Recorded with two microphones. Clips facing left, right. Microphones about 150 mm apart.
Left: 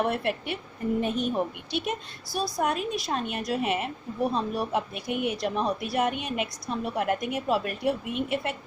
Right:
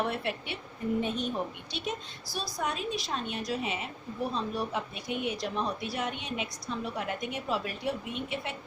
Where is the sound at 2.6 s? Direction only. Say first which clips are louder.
Left 2 dB; 55° left (ahead or behind).